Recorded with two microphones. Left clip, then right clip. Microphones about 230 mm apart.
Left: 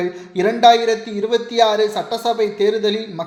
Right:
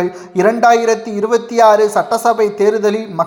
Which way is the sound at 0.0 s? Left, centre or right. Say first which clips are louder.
Right 6 dB; centre.